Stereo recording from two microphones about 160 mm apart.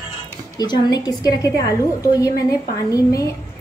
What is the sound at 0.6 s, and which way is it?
A woman's voice, 25° left (ahead or behind).